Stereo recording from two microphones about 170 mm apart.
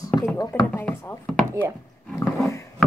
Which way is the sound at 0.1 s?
Centre (ahead or behind).